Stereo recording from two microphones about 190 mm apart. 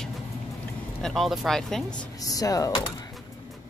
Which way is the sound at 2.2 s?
20° left (ahead or behind).